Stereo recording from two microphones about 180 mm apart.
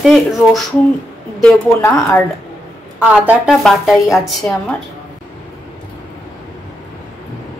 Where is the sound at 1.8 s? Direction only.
15° left (ahead or behind).